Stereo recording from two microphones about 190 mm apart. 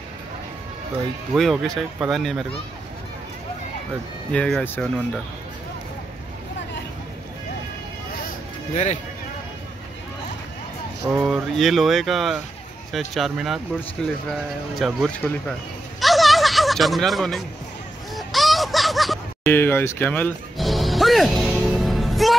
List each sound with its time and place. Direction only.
1.3 s speech: centre (ahead or behind)
4.3 s speech: 5° left (ahead or behind)
8.3 s music: 35° left (ahead or behind)
11.1 s speech: 5° right (ahead or behind)
16.0 s a sound: centre (ahead or behind)
18.1 s honk: centre (ahead or behind)
19.5 s music: 10° left (ahead or behind)